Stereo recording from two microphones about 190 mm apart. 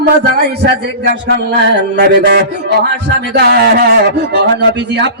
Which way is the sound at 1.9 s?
65° right (ahead or behind).